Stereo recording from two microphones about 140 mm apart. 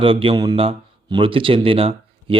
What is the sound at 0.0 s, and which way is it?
Speech, 40° right (ahead or behind).